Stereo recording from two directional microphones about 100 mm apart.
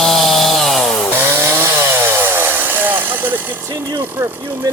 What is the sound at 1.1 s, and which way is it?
Chainsaw, 25° right (ahead or behind).